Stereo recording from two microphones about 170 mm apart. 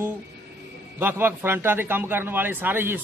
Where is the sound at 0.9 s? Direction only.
15° right (ahead or behind).